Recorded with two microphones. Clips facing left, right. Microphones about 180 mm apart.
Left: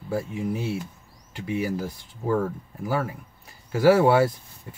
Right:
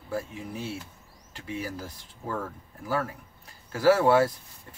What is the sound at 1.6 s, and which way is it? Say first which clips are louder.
Speech: left 9 dB; 15° left (ahead or behind).